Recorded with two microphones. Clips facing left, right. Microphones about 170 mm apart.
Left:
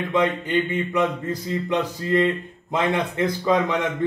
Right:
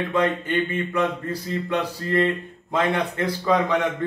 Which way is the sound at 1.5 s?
20° left (ahead or behind).